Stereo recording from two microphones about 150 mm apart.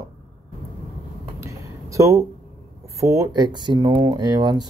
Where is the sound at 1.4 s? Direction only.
20° right (ahead or behind).